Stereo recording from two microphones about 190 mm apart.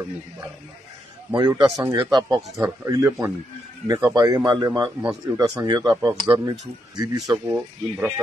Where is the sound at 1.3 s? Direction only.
20° right (ahead or behind).